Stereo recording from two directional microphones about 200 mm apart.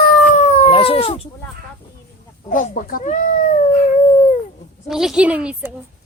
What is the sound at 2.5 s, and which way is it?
Speech, 40° left (ahead or behind).